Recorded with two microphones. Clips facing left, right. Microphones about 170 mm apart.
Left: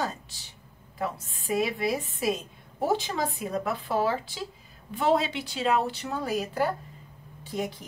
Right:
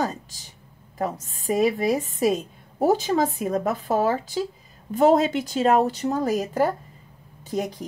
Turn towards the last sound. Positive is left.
turn(degrees=-40)  # may be behind; listen again after turning